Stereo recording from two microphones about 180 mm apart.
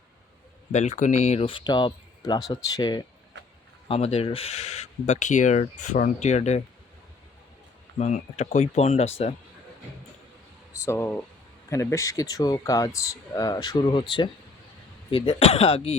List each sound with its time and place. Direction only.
0.7 s speech: 40° left (ahead or behind); by 3.0 s 20° left (ahead or behind)
3.3 s a sound: 80° right
3.8 s speech: 35° left (ahead or behind)
7.9 s speech: 40° left (ahead or behind)
10.8 s speech: 15° left (ahead or behind); by 16.0 s 35° left (ahead or behind)